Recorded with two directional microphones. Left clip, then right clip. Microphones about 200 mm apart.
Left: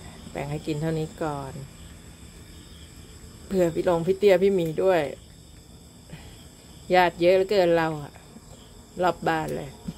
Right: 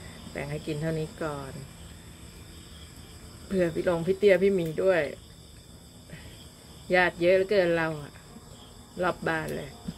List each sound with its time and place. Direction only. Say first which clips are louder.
0.3 s speech: left 3 dB; 15° left (ahead or behind)
3.4 s speech: left 4 dB; 15° left (ahead or behind)
6.9 s speech: left 3 dB; 15° left (ahead or behind)